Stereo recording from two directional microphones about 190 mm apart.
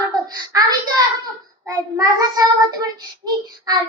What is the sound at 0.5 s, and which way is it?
Child singing, 20° right (ahead or behind).